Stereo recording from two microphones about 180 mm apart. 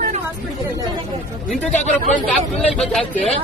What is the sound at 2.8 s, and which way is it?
Speech, 5° left (ahead or behind).